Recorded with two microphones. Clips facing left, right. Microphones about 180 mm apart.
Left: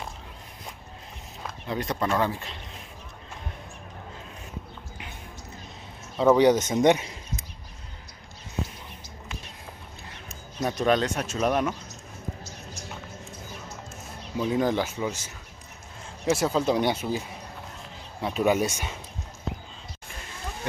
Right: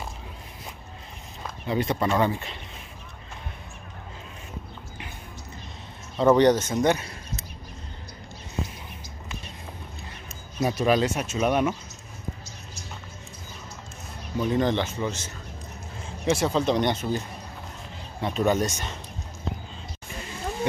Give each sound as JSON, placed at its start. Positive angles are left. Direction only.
{"t": 1.4, "sound": "speech", "side_deg": 0}
{"t": 6.1, "sound": "speech", "side_deg": 5}
{"t": 6.6, "sound": "a sound", "side_deg": 20}
{"t": 10.6, "sound": "speech", "side_deg": -5}
{"t": 14.3, "sound": "speech", "side_deg": 5}
{"t": 18.2, "sound": "speech", "side_deg": 5}